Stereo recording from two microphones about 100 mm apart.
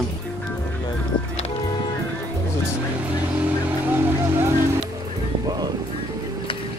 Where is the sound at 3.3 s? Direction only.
20° right (ahead or behind).